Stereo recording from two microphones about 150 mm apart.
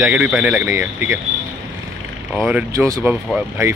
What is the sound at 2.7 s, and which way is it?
Speech, 20° right (ahead or behind).